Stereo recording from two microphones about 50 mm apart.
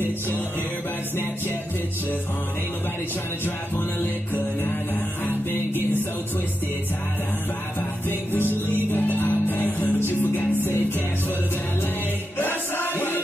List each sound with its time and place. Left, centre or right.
3.4 s music: left
8.1 s music: left
12.4 s music: left